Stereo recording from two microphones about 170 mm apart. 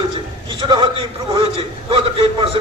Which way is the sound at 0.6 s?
25° right (ahead or behind).